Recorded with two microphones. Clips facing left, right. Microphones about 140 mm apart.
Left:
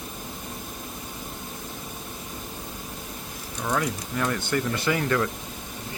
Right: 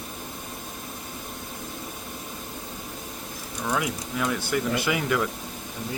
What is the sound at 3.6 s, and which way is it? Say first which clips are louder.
Speech: left 1 dB; 5° right (ahead or behind).